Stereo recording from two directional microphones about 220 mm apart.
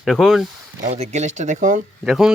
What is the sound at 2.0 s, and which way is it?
Speech, centre (ahead or behind).